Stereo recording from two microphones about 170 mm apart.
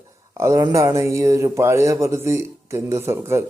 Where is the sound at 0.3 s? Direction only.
15° right (ahead or behind).